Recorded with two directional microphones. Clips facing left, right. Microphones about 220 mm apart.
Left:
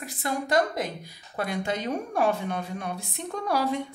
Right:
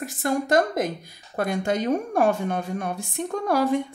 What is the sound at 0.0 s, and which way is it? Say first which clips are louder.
A woman's voice: right 6 dB; 45° right (ahead or behind).